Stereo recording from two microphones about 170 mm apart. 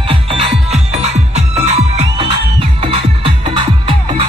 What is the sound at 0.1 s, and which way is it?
Music, 30° right (ahead or behind).